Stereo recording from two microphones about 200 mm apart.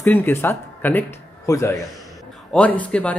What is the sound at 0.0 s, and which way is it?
Speech, 10° left (ahead or behind).